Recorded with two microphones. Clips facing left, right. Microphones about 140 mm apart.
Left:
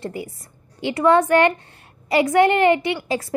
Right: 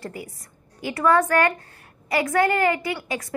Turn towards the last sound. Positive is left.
turn(degrees=25)  # may be behind; listen again after turning